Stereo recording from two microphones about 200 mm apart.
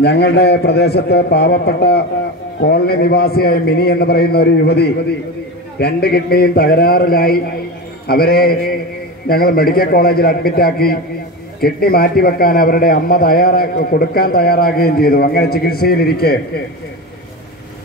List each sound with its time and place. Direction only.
0.0 s a man's voice: 55° left (ahead or behind)